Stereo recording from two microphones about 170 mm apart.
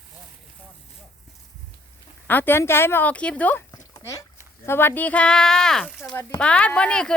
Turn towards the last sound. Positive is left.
turn(degrees=5)  # may be behind; listen again after turning